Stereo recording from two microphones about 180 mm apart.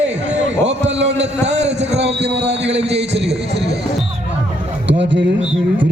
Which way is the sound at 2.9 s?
35° right (ahead or behind).